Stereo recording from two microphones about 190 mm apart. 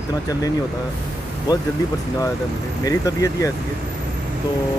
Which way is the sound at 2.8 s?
15° left (ahead or behind).